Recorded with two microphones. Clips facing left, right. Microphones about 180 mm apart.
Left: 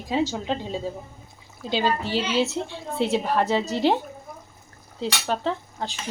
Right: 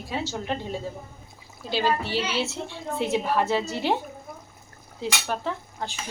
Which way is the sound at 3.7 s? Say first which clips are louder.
Left 4 dB; 15° right (ahead or behind).